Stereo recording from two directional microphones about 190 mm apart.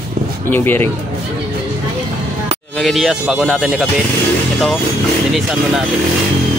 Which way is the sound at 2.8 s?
Centre (ahead or behind).